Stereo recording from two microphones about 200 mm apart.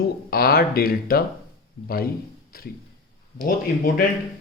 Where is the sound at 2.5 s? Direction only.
50° left (ahead or behind).